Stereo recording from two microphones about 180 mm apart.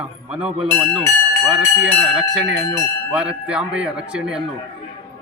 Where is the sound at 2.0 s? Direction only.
5° right (ahead or behind).